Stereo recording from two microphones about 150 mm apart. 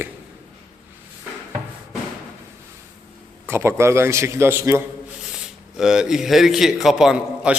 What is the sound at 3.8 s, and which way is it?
A man's voice, 15° right (ahead or behind).